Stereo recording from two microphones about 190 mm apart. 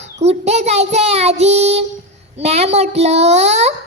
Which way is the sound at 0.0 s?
35° right (ahead or behind).